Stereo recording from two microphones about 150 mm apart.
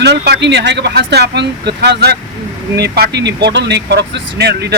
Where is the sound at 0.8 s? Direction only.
90° right.